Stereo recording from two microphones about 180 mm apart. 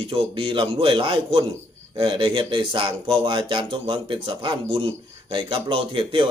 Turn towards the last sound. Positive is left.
turn(degrees=-30)  # may be behind; listen again after turning